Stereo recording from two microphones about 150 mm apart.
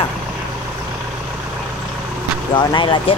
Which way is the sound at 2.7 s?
30° left (ahead or behind).